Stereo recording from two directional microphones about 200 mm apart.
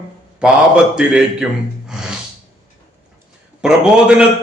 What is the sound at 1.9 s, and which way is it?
Snort, 5° right (ahead or behind).